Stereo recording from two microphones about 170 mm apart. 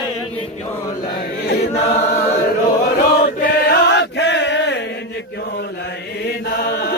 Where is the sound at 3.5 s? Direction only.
70° left (ahead or behind); by 4.8 s 90° left.